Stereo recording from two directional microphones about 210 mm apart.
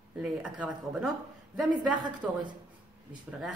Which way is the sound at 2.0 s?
20° right (ahead or behind).